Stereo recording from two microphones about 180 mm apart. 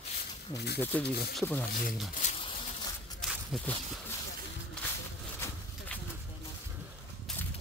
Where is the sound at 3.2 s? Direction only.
Centre (ahead or behind).